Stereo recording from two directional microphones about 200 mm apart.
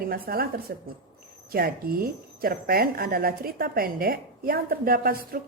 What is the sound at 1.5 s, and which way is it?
Speech, 45° right (ahead or behind).